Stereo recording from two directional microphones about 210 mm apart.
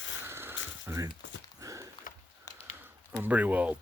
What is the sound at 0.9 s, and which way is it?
Speech, 15° right (ahead or behind).